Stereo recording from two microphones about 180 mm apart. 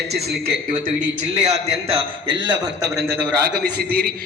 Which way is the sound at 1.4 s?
35° right (ahead or behind).